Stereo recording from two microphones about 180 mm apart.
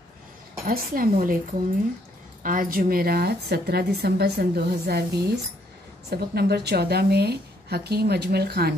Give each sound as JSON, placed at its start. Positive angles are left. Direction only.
{"t": 0.7, "sound": "a woman's voice", "side_deg": -50}
{"t": 2.4, "sound": "speech", "side_deg": -50}